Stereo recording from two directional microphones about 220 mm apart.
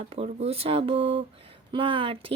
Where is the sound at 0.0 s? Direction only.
25° right (ahead or behind).